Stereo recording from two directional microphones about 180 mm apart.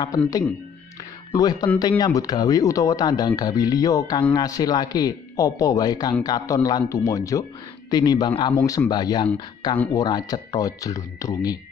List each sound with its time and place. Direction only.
1.3 s speech: 20° left (ahead or behind)